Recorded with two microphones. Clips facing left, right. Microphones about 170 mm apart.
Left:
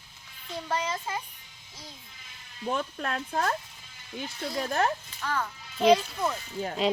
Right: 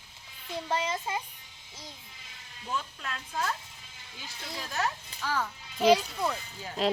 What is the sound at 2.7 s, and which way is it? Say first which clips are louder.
Speech: left 6 dB; 55° left (ahead or behind).